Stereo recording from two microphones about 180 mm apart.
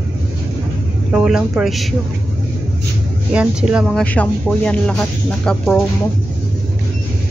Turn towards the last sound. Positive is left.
turn(degrees=5)  # may be behind; listen again after turning